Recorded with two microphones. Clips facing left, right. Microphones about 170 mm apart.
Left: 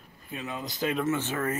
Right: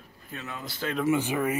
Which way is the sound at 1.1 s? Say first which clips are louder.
Right 3 dB; 15° right (ahead or behind).